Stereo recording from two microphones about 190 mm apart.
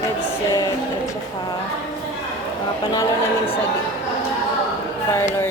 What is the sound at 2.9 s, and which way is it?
Speech, 25° left (ahead or behind).